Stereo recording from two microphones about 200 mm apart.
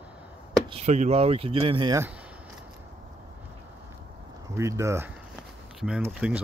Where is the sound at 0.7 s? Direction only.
30° right (ahead or behind).